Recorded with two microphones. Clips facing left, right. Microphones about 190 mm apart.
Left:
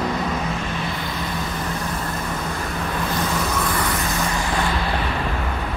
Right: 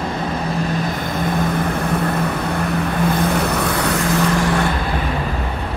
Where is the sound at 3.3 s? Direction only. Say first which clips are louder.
Right 4 dB; 65° right (ahead or behind).